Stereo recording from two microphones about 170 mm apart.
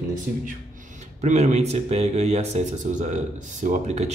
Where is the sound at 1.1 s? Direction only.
40° right (ahead or behind).